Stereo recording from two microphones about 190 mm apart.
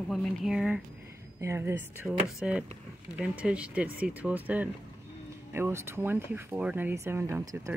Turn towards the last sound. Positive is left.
turn(degrees=-15)  # may be behind; listen again after turning